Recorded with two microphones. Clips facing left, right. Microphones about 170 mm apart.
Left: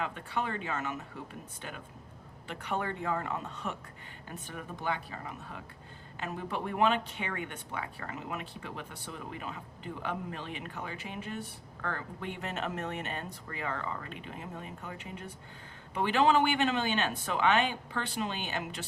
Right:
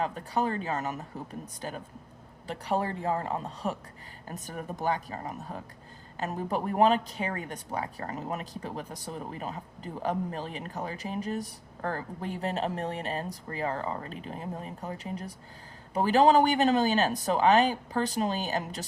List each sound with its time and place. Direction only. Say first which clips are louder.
0.0 s speech: right 5 dB; 35° right (ahead or behind)